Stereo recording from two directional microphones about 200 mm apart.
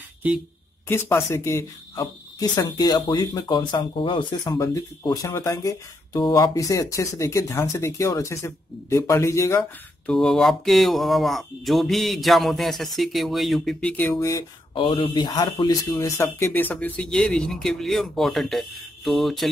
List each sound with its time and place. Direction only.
0.8 s speech: 10° left (ahead or behind)
14.1 s speech: 20° left (ahead or behind); by 19.5 s centre (ahead or behind)